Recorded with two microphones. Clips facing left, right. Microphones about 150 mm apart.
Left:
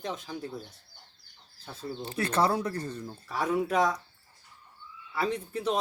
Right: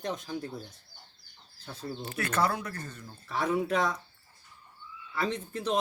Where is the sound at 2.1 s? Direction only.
30° left (ahead or behind).